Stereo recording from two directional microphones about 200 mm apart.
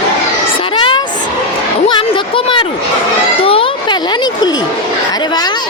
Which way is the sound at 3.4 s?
25° left (ahead or behind).